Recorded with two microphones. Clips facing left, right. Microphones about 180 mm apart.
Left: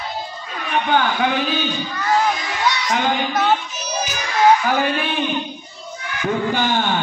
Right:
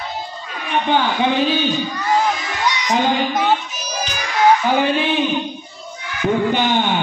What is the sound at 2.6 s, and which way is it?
Speech, 15° right (ahead or behind).